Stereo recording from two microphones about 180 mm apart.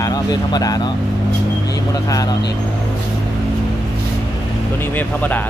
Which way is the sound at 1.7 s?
20° left (ahead or behind).